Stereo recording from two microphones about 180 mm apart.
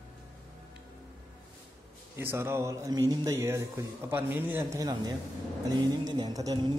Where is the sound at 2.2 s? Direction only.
15° right (ahead or behind).